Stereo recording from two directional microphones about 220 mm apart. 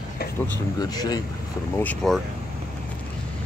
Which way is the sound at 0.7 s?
15° left (ahead or behind).